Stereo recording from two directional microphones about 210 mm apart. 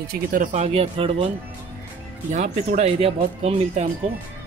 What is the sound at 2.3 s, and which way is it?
Speech, 35° right (ahead or behind).